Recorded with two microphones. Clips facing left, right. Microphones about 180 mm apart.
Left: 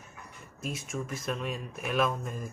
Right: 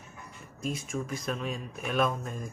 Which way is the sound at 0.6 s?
Centre (ahead or behind).